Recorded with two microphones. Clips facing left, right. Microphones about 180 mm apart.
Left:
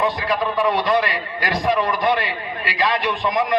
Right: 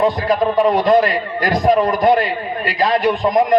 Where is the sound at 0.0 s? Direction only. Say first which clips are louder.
Right 6 dB; 40° right (ahead or behind).